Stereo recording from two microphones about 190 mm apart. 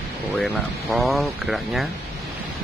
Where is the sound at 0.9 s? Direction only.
Centre (ahead or behind).